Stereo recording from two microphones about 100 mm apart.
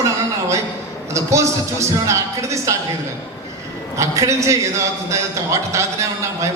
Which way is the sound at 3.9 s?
30° right (ahead or behind).